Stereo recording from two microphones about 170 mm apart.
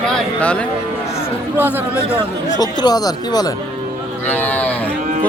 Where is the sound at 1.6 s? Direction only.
10° right (ahead or behind).